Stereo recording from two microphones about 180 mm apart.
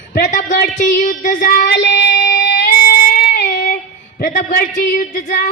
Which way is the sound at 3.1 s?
50° left (ahead or behind).